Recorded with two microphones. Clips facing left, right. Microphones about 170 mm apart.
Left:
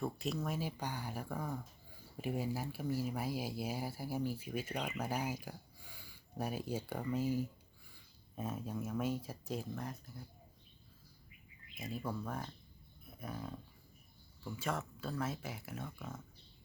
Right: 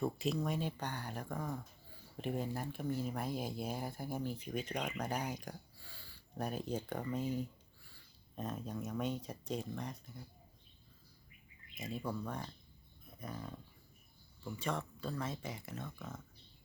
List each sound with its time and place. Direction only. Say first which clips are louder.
0.0 s speech: right 3 dB; centre (ahead or behind)
11.8 s speech: right 1 dB; centre (ahead or behind)
13.1 s a sound: left 1 dB; 5° left (ahead or behind)
14.4 s speech: even; 5° left (ahead or behind)